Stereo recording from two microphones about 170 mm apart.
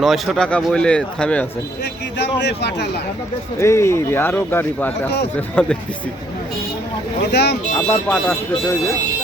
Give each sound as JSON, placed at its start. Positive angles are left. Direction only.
{"t": 0.0, "sound": "speech", "side_deg": 0}
{"t": 1.8, "sound": "speech", "side_deg": 85}
{"t": 3.6, "sound": "speech", "side_deg": 15}
{"t": 7.3, "sound": "speech", "side_deg": 80}
{"t": 7.8, "sound": "speech", "side_deg": 10}